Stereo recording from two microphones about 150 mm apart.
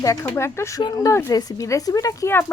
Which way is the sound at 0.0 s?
20° left (ahead or behind).